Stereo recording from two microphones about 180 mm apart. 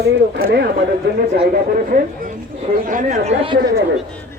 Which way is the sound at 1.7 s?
50° right (ahead or behind).